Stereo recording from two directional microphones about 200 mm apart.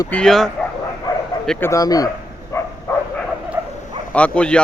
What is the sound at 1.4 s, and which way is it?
Speech, 15° left (ahead or behind).